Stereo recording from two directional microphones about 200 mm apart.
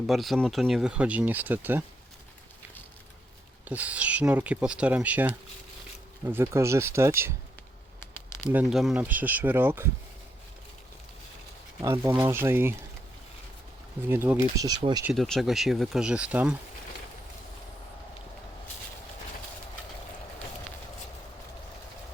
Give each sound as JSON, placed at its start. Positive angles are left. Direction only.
{"t": 0.1, "sound": "speech", "side_deg": 0}
{"t": 3.7, "sound": "speech", "side_deg": -5}
{"t": 8.4, "sound": "speech", "side_deg": -5}
{"t": 11.8, "sound": "speech", "side_deg": -15}
{"t": 14.1, "sound": "speech", "side_deg": -10}
{"t": 15.0, "sound": "speech", "side_deg": 0}